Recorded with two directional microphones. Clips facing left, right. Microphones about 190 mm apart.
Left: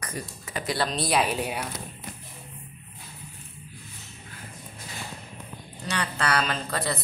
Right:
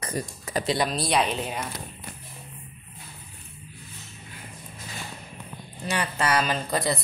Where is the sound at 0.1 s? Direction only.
40° right (ahead or behind).